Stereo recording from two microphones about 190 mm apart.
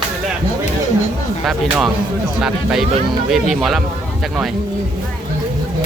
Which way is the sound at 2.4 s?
5° right (ahead or behind).